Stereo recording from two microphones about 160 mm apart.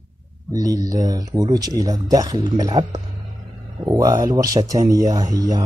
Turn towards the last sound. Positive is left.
turn(degrees=-25)  # may be behind; listen again after turning